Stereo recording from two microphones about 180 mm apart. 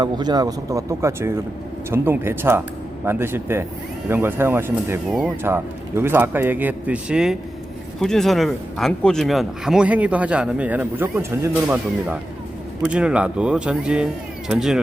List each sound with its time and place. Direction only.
0.0 s speech: 25° right (ahead or behind); by 14.8 s 5° right (ahead or behind)